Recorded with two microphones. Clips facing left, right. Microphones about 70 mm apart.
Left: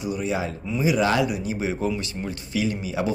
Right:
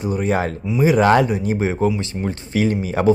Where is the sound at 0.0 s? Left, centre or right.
Right.